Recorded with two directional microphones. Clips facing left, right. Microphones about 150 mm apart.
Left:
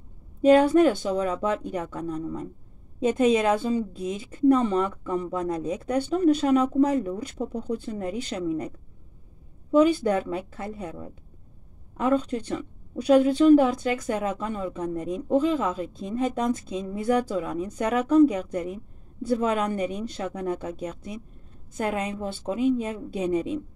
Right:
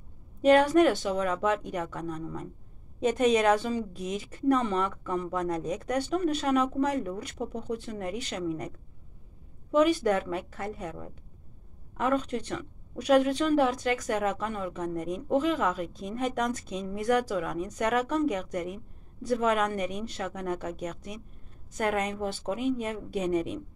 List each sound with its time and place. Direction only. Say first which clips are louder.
0.6 s speech: left 3 dB; 25° left (ahead or behind)
3.9 s speech: left 3 dB; 30° left (ahead or behind)
9.8 s a woman's voice: left 3 dB; 30° left (ahead or behind)